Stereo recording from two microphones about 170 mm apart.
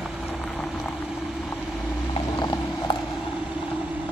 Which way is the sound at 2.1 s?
25° left (ahead or behind).